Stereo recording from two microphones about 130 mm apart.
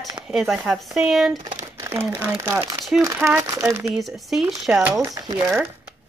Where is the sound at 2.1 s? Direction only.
10° right (ahead or behind).